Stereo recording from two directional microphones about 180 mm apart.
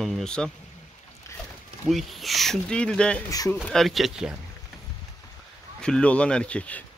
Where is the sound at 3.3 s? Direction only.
20° left (ahead or behind).